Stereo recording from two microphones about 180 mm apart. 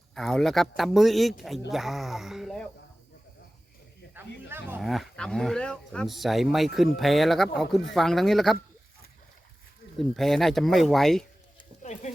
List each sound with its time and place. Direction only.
0.1 s speech: centre (ahead or behind)
4.4 s speech: 10° right (ahead or behind)
4.8 s speech: centre (ahead or behind)
10.0 s speech: centre (ahead or behind)
11.8 s speech: 40° left (ahead or behind)